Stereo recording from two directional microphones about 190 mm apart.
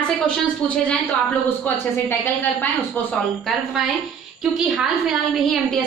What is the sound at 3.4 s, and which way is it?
A woman's voice, centre (ahead or behind).